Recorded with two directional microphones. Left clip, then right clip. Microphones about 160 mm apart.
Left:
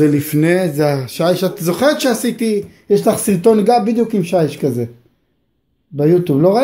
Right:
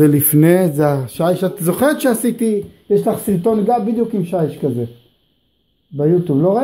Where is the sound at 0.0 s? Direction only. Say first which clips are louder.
Right 1 dB; 20° right (ahead or behind).